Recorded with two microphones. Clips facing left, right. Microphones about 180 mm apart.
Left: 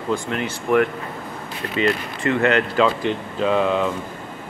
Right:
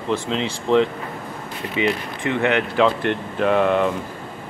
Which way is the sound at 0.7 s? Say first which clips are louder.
Right 1 dB; 25° right (ahead or behind).